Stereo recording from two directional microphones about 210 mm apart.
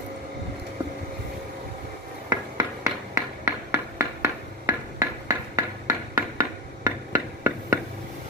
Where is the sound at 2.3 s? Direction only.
15° right (ahead or behind).